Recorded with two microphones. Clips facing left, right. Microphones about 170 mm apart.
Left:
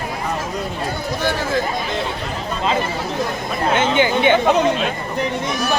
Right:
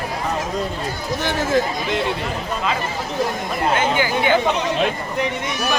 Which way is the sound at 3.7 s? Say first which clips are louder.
Left 5 dB; 25° left (ahead or behind).